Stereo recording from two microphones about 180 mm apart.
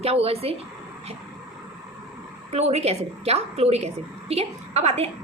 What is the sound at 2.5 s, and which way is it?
A woman's voice, 35° right (ahead or behind).